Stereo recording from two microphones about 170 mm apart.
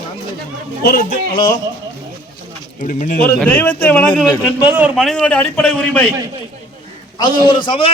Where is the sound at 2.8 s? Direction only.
50° left (ahead or behind).